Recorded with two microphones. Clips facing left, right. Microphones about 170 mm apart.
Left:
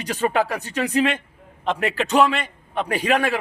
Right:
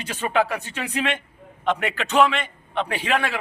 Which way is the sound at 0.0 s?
40° left (ahead or behind).